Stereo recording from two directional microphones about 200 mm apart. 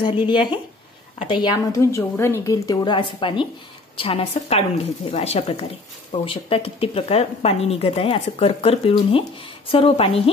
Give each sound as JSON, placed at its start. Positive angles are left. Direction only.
{"t": 0.2, "sound": "speech", "side_deg": -5}
{"t": 1.2, "sound": "speech", "side_deg": 25}